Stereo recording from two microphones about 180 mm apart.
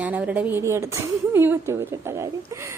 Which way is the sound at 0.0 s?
10° right (ahead or behind).